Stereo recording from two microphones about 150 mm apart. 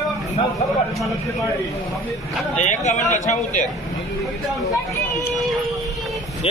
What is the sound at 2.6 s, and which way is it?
A man's voice, 50° left (ahead or behind).